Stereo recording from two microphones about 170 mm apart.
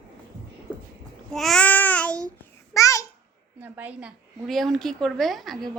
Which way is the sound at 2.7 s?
20° left (ahead or behind).